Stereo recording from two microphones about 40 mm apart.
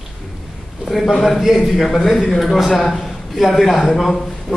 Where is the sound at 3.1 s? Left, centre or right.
Centre.